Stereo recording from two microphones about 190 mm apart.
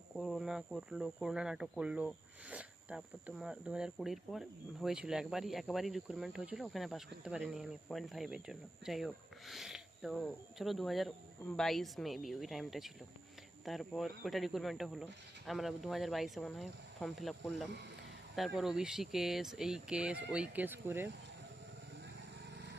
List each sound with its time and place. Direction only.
0.2 s speech: centre (ahead or behind)